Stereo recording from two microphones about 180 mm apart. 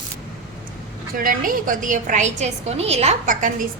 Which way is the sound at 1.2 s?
50° right (ahead or behind).